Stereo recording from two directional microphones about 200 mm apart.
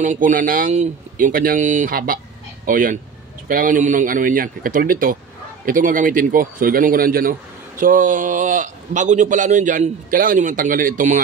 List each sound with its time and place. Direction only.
0.0 s speech: 40° right (ahead or behind)